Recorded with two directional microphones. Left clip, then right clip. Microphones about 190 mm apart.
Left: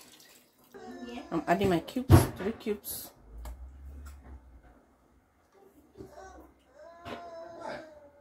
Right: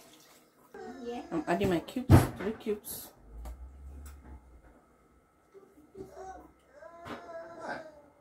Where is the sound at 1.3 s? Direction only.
25° left (ahead or behind).